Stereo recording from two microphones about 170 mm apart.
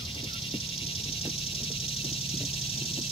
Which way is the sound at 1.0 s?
35° left (ahead or behind).